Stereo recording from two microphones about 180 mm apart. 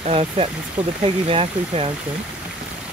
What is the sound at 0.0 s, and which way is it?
Speech, 35° right (ahead or behind).